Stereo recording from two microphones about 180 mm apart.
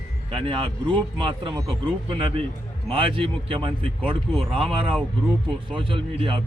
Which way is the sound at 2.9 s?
30° right (ahead or behind).